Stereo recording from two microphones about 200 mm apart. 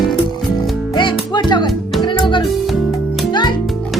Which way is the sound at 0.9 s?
25° left (ahead or behind).